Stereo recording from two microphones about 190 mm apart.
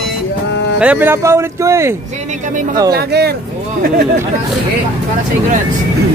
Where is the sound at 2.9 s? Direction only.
55° right (ahead or behind).